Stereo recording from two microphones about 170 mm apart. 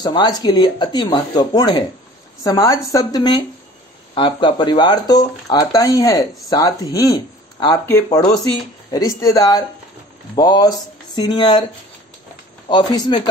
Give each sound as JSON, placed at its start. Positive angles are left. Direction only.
{"t": 0.0, "sound": "speech", "side_deg": 25}
{"t": 12.6, "sound": "speech", "side_deg": 25}